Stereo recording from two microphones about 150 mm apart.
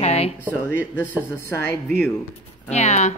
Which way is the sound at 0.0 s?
45° left (ahead or behind).